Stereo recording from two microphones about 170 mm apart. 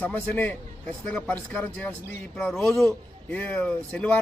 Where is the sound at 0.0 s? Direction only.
10° left (ahead or behind).